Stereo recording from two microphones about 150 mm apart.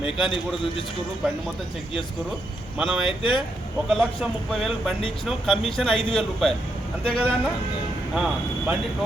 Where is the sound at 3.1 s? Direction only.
35° left (ahead or behind).